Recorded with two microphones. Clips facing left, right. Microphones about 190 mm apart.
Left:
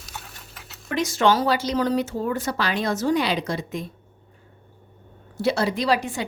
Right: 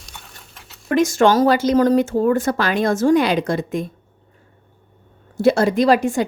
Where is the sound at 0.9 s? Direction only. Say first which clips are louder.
Right 6 dB; 50° right (ahead or behind).